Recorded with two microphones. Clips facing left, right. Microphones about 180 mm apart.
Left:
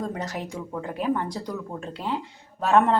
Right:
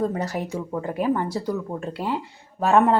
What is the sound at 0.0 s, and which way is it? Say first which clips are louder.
Speech: right 5 dB; 10° right (ahead or behind).